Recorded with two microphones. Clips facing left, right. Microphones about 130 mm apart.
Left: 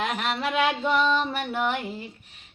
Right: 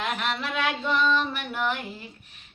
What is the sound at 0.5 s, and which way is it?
Speech, 25° left (ahead or behind).